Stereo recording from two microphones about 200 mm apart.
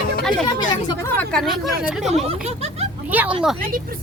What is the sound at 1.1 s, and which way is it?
Speech, 5° left (ahead or behind).